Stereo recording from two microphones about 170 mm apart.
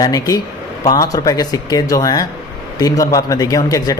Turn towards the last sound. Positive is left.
turn(degrees=20)  # may be behind; listen again after turning